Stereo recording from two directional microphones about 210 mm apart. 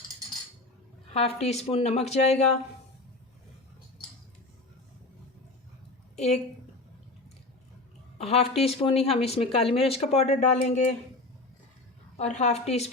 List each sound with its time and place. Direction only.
1.1 s a woman's voice: 30° left (ahead or behind)
6.1 s a woman's voice: 30° left (ahead or behind)
8.2 s speech: 30° left (ahead or behind)
12.1 s a woman's voice: 30° left (ahead or behind)